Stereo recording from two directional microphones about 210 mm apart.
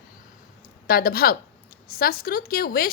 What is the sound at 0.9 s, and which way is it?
Speech, 45° left (ahead or behind).